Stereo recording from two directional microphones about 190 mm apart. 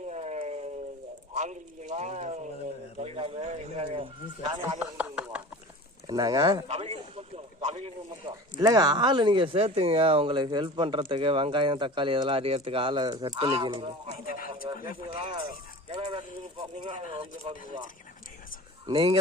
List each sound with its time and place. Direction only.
0.1 s a sound: 35° right (ahead or behind)
1.3 s speech: 40° right (ahead or behind)
4.8 s chopping: 5° right (ahead or behind)
6.1 s speech: 20° right (ahead or behind)
14.3 s speech: 50° left (ahead or behind)
15.1 s speech: 30° right (ahead or behind)
18.9 s speech: 25° right (ahead or behind)